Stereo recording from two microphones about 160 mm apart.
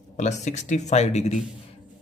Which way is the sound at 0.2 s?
45° left (ahead or behind).